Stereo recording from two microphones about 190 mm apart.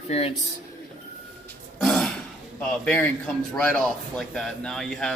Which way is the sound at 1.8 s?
5° left (ahead or behind).